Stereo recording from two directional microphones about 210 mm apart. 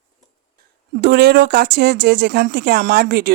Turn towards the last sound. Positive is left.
turn(degrees=-50)  # may be behind; listen again after turning